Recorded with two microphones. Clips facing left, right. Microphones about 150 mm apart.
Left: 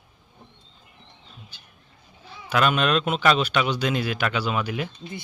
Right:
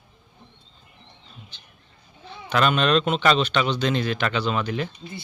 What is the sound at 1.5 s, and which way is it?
Speech, 10° left (ahead or behind).